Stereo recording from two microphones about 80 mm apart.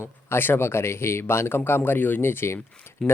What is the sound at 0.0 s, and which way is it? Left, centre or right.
Speech, left.